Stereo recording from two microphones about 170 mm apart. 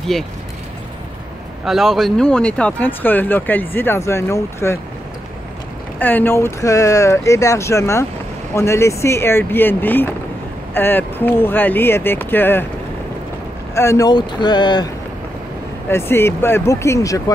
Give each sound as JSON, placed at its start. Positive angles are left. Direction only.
{"t": 1.6, "sound": "speech", "side_deg": 0}
{"t": 5.9, "sound": "speech", "side_deg": 10}
{"t": 13.7, "sound": "speech", "side_deg": 20}
{"t": 15.9, "sound": "speech", "side_deg": 15}